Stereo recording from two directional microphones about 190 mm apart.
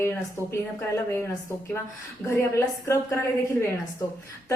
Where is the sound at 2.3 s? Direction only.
15° left (ahead or behind).